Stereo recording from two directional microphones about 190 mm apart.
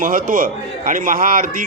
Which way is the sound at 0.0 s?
45° right (ahead or behind).